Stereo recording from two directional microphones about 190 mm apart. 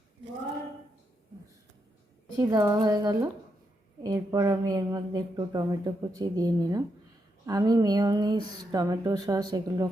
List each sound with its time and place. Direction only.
2.4 s a woman's voice: 20° right (ahead or behind)